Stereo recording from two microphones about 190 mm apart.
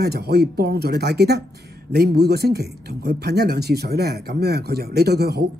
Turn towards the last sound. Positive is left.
turn(degrees=-60)  # may be behind; listen again after turning